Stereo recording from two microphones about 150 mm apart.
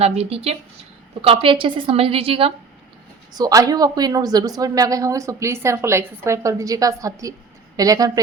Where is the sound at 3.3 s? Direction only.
25° right (ahead or behind).